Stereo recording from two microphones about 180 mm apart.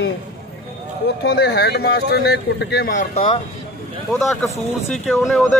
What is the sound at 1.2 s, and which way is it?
Speech, 65° left (ahead or behind).